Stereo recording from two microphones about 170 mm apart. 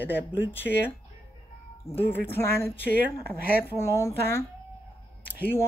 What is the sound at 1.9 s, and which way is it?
Speech, 10° left (ahead or behind).